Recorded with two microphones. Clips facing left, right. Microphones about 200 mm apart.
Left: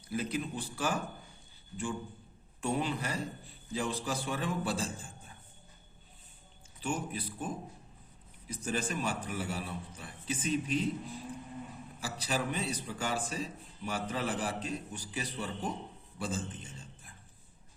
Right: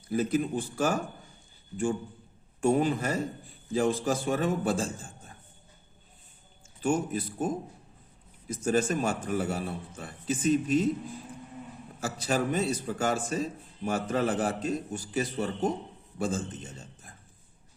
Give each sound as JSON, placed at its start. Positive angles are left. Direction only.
{"t": 0.1, "sound": "a man's voice", "side_deg": -45}
{"t": 2.6, "sound": "a man's voice", "side_deg": -45}
{"t": 6.8, "sound": "a man's voice", "side_deg": -45}
{"t": 8.6, "sound": "a man's voice", "side_deg": -45}
{"t": 11.9, "sound": "a man's voice", "side_deg": -45}